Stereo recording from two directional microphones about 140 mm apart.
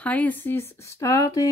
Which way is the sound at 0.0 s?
10° left (ahead or behind).